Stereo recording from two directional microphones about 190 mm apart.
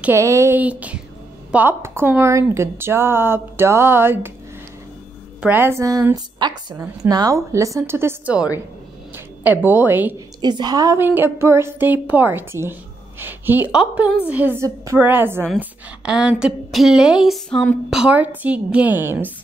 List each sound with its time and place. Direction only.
0.0 s a woman's voice: 15° right (ahead or behind)
5.4 s a woman's voice: 10° right (ahead or behind)
10.4 s a woman's voice: 20° right (ahead or behind)